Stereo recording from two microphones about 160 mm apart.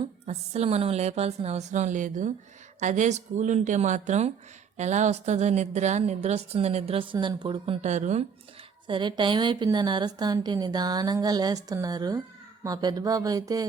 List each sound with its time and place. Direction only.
0.3 s a woman's voice: 45° right (ahead or behind)
8.9 s a woman's voice: 30° right (ahead or behind)